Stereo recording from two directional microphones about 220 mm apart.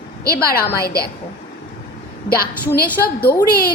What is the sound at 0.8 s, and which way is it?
Speech, 45° left (ahead or behind).